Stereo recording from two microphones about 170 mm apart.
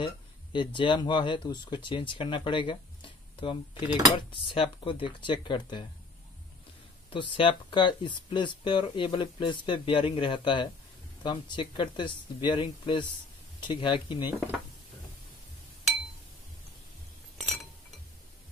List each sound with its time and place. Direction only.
0.0 s a sound: 30° left (ahead or behind)
0.7 s speech: 25° left (ahead or behind)
7.1 s speech: 30° left (ahead or behind)